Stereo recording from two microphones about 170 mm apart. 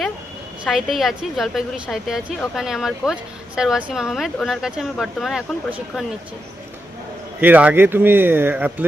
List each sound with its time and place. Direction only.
0.7 s a woman's voice: centre (ahead or behind)
7.4 s speech: 10° right (ahead or behind)